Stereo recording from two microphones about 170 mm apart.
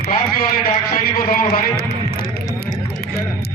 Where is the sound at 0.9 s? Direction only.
60° left (ahead or behind).